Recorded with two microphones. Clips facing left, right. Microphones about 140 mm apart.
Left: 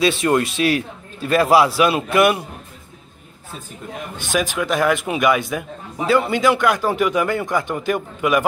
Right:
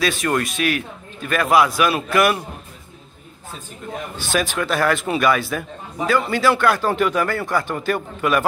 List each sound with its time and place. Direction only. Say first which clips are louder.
0.0 s a man's voice: left 4 dB; 25° left (ahead or behind)
4.3 s a man's voice: left 1 dB; 15° left (ahead or behind)